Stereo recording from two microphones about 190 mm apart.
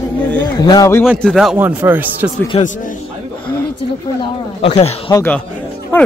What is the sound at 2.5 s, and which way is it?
Speech, 30° left (ahead or behind).